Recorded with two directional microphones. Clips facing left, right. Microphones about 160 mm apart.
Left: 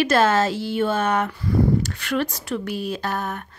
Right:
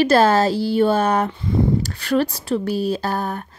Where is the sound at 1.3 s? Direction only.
25° right (ahead or behind).